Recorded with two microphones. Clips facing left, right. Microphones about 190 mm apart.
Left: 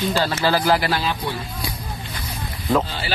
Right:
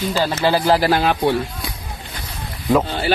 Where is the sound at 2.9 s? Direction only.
50° right (ahead or behind).